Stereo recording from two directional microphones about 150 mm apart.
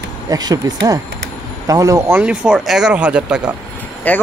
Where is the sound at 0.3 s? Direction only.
25° right (ahead or behind); by 3.5 s 5° right (ahead or behind).